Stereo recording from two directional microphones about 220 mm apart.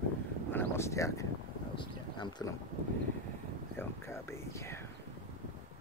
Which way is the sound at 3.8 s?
10° left (ahead or behind).